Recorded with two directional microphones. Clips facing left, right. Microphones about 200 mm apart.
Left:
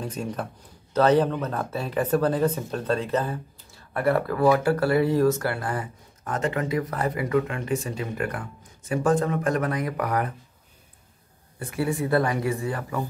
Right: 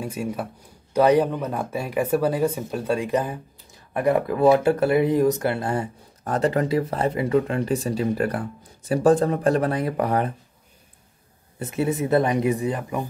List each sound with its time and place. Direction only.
0.0 s speech: 10° right (ahead or behind); by 10.3 s 30° right (ahead or behind)
11.6 s speech: 20° right (ahead or behind)